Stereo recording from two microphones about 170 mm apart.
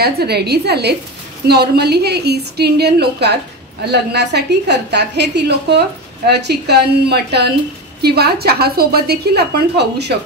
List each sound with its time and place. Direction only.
0.0 s a woman's voice: 70° right (ahead or behind)